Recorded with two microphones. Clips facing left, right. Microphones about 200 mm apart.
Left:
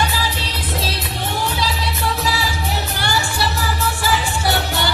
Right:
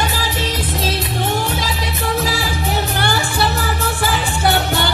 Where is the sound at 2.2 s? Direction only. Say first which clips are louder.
Right 2 dB; 50° right (ahead or behind).